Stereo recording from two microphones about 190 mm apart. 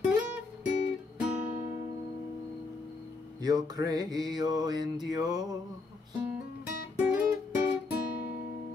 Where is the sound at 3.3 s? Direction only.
20° right (ahead or behind).